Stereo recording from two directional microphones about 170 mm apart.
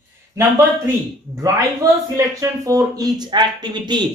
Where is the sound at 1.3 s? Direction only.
20° right (ahead or behind).